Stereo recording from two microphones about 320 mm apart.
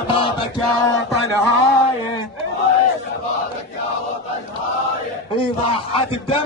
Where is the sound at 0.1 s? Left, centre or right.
Centre.